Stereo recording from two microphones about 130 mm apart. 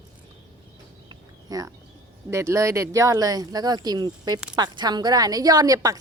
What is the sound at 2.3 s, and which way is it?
A woman's voice, 25° right (ahead or behind).